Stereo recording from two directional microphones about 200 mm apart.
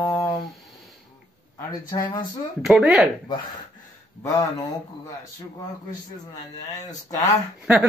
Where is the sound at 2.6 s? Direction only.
5° right (ahead or behind).